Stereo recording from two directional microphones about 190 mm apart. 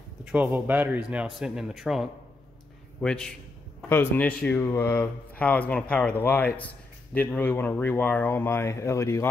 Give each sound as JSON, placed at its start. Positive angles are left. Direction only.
{"t": 0.2, "sound": "speech", "side_deg": -5}